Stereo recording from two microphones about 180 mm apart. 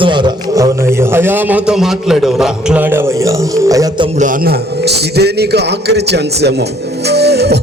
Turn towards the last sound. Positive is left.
turn(degrees=-65)  # may be behind; listen again after turning